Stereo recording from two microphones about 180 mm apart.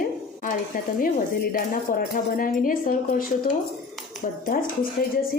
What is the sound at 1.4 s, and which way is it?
Speech, 55° left (ahead or behind).